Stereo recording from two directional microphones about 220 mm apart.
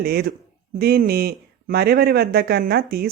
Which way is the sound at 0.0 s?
45° right (ahead or behind).